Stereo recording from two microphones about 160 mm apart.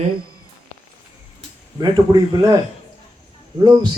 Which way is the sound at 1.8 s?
25° right (ahead or behind).